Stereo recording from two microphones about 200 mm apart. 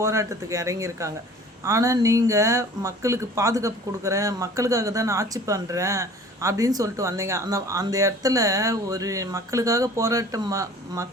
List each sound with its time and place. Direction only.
0.0 s speech: 15° right (ahead or behind)